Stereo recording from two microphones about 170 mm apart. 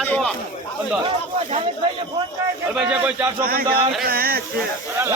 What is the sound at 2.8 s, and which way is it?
Speech, 5° right (ahead or behind).